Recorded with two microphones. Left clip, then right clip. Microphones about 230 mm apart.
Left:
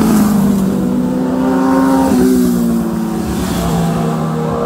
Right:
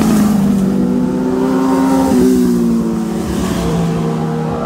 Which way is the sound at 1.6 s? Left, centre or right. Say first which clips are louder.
Left 3 dB; right.